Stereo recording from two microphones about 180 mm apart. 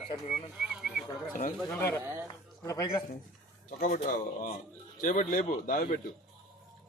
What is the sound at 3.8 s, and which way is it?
Speech, 45° left (ahead or behind).